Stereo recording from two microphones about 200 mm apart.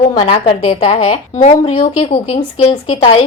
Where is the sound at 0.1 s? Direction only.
25° left (ahead or behind).